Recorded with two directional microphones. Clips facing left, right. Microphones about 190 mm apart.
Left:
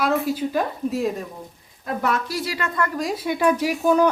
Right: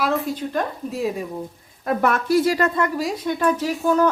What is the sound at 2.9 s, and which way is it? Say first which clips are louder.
Speech: right 1 dB; centre (ahead or behind).